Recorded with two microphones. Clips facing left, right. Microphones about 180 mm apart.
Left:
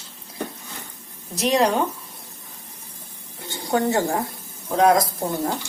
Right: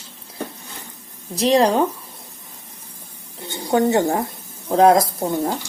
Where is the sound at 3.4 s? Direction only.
20° right (ahead or behind).